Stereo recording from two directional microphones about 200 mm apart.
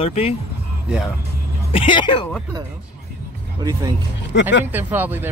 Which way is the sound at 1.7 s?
25° left (ahead or behind).